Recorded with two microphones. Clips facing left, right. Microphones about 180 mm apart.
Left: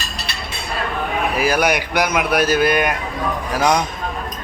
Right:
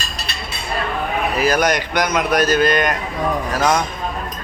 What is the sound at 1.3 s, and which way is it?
Speech, 10° left (ahead or behind).